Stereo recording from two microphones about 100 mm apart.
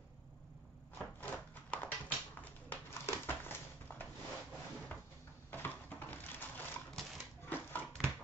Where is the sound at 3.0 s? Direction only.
25° left (ahead or behind).